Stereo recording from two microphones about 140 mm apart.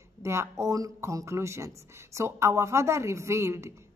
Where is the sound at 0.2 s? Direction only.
20° right (ahead or behind).